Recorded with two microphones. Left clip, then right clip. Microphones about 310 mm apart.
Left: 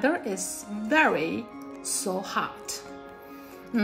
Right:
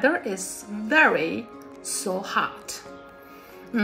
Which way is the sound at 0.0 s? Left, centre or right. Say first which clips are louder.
Right 3 dB; centre.